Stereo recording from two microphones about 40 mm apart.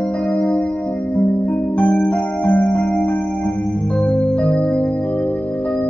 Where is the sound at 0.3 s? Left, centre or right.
Left.